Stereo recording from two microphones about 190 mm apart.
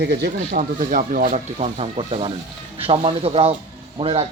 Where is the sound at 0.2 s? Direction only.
45° right (ahead or behind).